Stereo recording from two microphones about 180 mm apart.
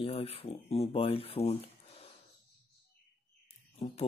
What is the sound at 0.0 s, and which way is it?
Speech, 30° left (ahead or behind).